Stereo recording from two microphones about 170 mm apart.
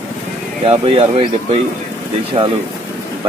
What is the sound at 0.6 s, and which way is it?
Speech, 35° right (ahead or behind).